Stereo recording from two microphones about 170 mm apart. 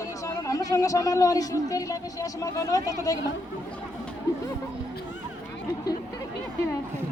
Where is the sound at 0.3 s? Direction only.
20° left (ahead or behind).